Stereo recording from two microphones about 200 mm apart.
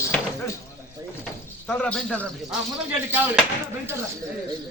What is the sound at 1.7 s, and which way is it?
Speech, 5° left (ahead or behind).